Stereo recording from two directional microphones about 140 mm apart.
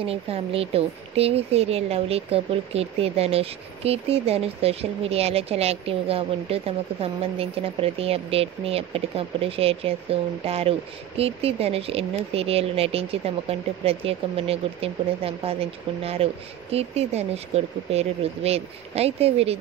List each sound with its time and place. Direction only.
0.0 s speech: 45° right (ahead or behind)